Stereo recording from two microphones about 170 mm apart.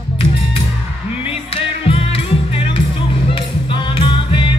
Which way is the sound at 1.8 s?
30° left (ahead or behind).